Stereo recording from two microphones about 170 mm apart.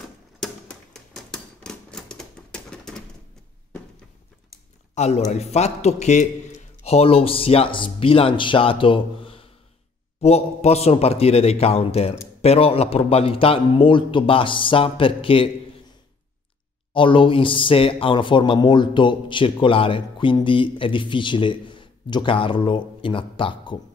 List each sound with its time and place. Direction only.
0.4 s typewriter: centre (ahead or behind)
4.9 s a man's voice: 40° left (ahead or behind)
16.9 s a man's voice: 30° left (ahead or behind)